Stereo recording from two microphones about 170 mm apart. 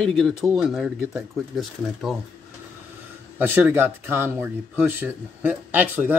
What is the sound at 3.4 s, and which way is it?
Speech, 10° right (ahead or behind).